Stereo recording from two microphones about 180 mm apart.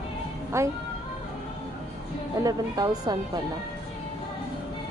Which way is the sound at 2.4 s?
20° right (ahead or behind).